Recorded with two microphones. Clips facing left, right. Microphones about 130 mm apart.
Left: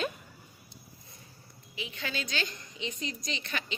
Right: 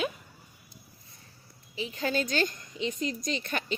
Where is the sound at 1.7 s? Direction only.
35° right (ahead or behind).